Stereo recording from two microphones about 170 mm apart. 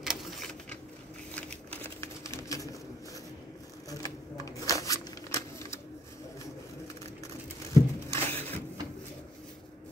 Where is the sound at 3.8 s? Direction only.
20° left (ahead or behind).